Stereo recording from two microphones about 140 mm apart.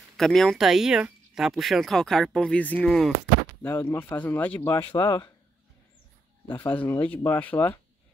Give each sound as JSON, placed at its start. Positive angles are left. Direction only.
{"t": 0.2, "sound": "speech", "side_deg": 0}
{"t": 3.6, "sound": "speech", "side_deg": 20}
{"t": 4.9, "sound": "speech", "side_deg": 30}
{"t": 6.7, "sound": "speech", "side_deg": 10}